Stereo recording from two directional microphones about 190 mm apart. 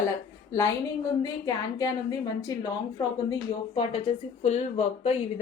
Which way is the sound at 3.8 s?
30° left (ahead or behind).